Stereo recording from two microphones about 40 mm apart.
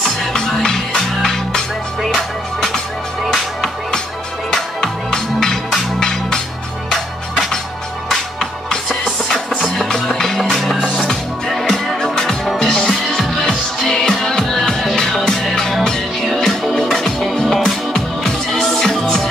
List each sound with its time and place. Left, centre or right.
0.3 s music: centre
4.5 s music: centre
8.1 s music: centre
10.9 s music: centre